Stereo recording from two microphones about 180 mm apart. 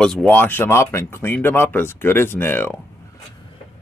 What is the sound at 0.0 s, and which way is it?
Speech, 5° left (ahead or behind).